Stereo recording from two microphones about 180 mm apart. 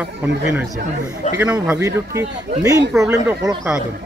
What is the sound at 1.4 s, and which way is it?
Speech, 10° right (ahead or behind).